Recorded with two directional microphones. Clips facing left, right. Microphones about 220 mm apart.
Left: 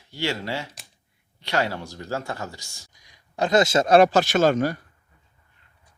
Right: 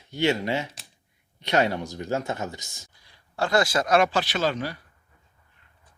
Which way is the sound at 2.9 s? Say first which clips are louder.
Left 2 dB; 15° left (ahead or behind).